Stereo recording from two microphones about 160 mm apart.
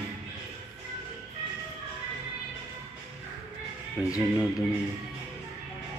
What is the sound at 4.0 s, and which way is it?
Speech, 15° left (ahead or behind).